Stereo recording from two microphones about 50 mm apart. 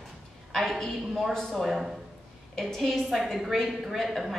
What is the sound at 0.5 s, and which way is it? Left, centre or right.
A woman's voice, centre.